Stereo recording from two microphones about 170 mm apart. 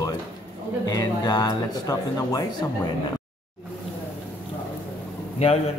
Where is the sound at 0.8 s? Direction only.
25° left (ahead or behind).